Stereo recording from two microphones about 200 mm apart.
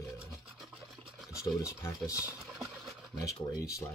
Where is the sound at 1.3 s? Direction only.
15° left (ahead or behind).